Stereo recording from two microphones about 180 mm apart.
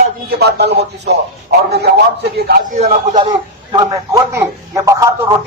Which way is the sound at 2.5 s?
40° right (ahead or behind).